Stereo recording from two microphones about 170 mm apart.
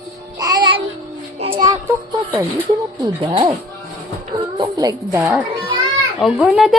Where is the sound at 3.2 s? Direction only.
35° right (ahead or behind).